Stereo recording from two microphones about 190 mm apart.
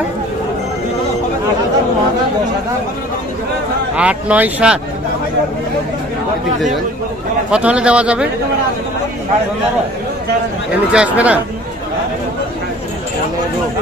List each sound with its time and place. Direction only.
3.9 s speech: 5° right (ahead or behind)
7.5 s a man's voice: 5° right (ahead or behind)
10.7 s speech: 5° right (ahead or behind)